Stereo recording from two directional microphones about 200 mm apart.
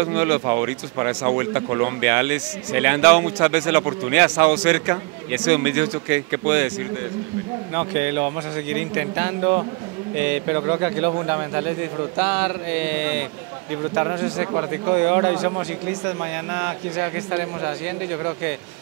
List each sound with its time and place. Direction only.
0.0 s speech: 10° right (ahead or behind)
7.7 s speech: 15° right (ahead or behind)
13.9 s speech: 20° right (ahead or behind)